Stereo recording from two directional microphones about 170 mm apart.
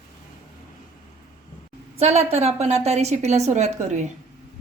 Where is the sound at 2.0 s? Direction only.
40° right (ahead or behind).